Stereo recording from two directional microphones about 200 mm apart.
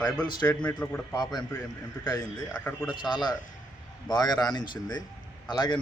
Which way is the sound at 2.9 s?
20° left (ahead or behind).